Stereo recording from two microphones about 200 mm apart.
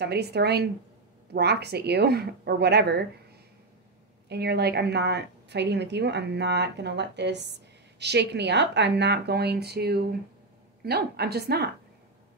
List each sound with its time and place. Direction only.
0.0 s a woman's voice: 55° right (ahead or behind)
4.3 s a woman's voice: 55° right (ahead or behind)